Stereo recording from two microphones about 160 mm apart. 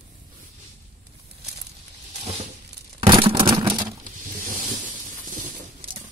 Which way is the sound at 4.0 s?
60° right (ahead or behind).